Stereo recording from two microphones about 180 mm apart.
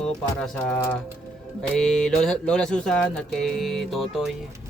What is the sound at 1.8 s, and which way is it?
Music, 5° left (ahead or behind).